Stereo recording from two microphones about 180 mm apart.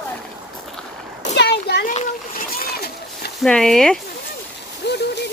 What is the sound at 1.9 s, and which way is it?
Splash, 40° left (ahead or behind).